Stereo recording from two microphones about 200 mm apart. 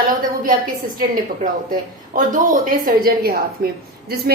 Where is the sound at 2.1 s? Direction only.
40° right (ahead or behind).